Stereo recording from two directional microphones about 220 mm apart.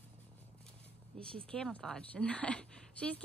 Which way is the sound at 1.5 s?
5° left (ahead or behind).